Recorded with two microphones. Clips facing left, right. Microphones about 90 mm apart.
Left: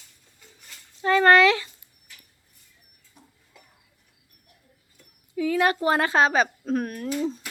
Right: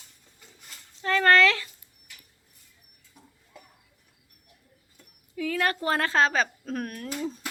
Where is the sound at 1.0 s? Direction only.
10° left (ahead or behind).